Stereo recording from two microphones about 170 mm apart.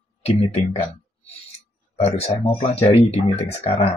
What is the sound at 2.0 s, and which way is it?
Speech, 40° left (ahead or behind).